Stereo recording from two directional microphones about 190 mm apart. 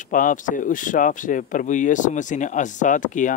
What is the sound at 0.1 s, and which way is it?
Speech, 45° left (ahead or behind).